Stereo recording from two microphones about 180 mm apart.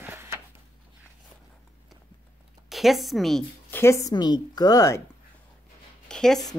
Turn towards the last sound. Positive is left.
turn(degrees=0)  # may be behind; listen again after turning